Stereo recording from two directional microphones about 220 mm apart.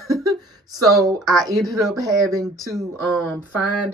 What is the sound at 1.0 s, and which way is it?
Speech, 15° right (ahead or behind).